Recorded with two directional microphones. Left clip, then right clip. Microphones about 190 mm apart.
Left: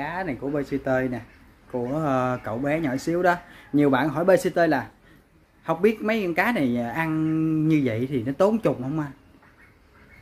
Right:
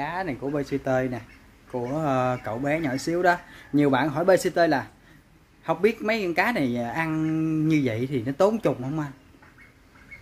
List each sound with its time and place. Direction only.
0.0 s speech: 20° right (ahead or behind)